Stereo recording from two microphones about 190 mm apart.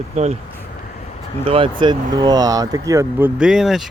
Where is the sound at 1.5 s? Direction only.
30° right (ahead or behind).